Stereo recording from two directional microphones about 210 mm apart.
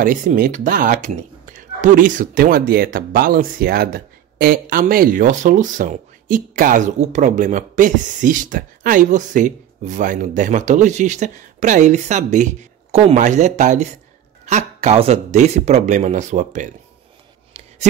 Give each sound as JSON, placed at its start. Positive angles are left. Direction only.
{"t": 0.0, "sound": "speech", "side_deg": -40}